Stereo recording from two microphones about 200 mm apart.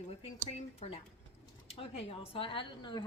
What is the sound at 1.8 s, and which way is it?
A woman's voice, 30° left (ahead or behind).